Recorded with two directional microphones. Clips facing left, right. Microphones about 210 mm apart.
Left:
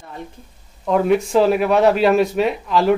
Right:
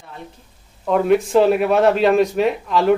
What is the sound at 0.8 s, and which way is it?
Speech, centre (ahead or behind).